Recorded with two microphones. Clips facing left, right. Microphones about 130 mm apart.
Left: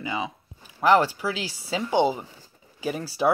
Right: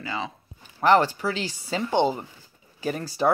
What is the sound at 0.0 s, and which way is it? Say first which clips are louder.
Speech: left 2 dB; 15° left (ahead or behind).